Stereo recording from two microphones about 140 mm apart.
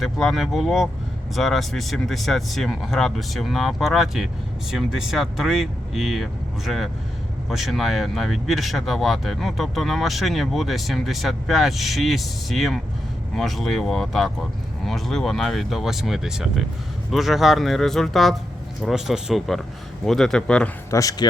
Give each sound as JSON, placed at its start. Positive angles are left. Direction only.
{"t": 0.0, "sound": "speech", "side_deg": 0}
{"t": 20.9, "sound": "speech", "side_deg": 25}